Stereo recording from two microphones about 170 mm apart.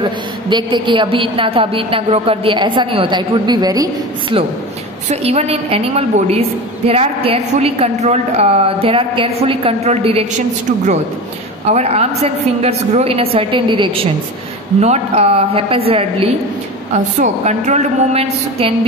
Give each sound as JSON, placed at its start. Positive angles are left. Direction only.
{"t": 0.0, "sound": "a woman's voice", "side_deg": -25}
{"t": 5.1, "sound": "a woman's voice", "side_deg": -35}
{"t": 11.7, "sound": "a woman's voice", "side_deg": -40}
{"t": 16.9, "sound": "a woman's voice", "side_deg": -45}